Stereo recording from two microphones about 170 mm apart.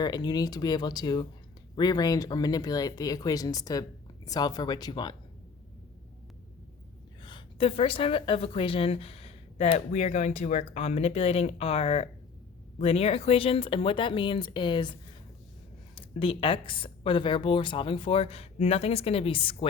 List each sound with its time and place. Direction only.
0.0 s speech: 25° left (ahead or behind)
7.2 s a woman's voice: 30° left (ahead or behind)
16.0 s a woman's voice: 30° left (ahead or behind)